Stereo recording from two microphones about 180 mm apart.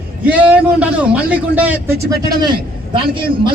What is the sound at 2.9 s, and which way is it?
Speech, 30° right (ahead or behind).